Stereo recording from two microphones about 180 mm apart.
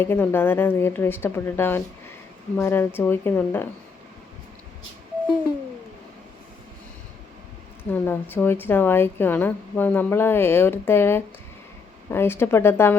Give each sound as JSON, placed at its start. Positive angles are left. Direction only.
{"t": 0.0, "sound": "a woman's voice", "side_deg": 10}
{"t": 7.9, "sound": "a woman's voice", "side_deg": 10}